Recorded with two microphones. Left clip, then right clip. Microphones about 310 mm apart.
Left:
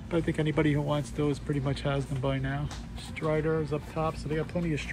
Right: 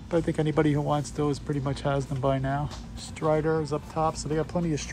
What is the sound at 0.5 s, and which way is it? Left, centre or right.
Speech, centre.